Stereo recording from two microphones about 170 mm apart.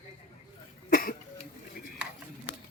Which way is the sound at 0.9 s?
55° left (ahead or behind).